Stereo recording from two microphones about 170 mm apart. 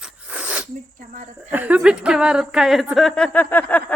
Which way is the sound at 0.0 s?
5° right (ahead or behind).